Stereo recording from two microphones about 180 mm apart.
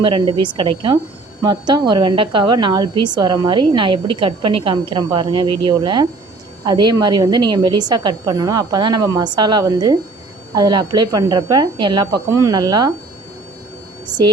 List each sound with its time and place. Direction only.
0.0 s a woman's voice: 25° right (ahead or behind)
14.1 s speech: 5° right (ahead or behind)